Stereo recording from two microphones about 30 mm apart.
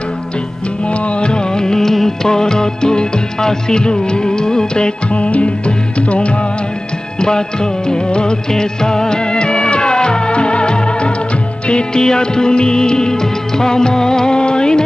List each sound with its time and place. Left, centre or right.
0.8 s music: left
5.1 s music: left
7.2 s music: left
11.9 s music of bollywood: left